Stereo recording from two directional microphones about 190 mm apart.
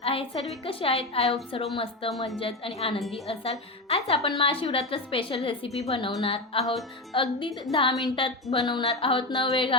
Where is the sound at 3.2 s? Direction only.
30° left (ahead or behind).